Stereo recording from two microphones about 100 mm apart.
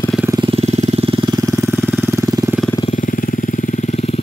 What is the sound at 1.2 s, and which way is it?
Engine, 45° right (ahead or behind).